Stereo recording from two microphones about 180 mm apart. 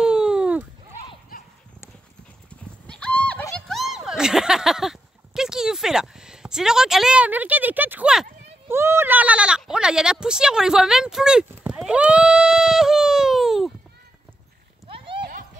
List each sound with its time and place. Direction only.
0.0 s a sound: 5° right (ahead or behind)
1.3 s clip-clop: 55° left (ahead or behind)
2.9 s horse: 5° left (ahead or behind)
3.5 s a sound: centre (ahead or behind)
8.6 s speech: 15° right (ahead or behind)
14.9 s clip-clop: 30° right (ahead or behind)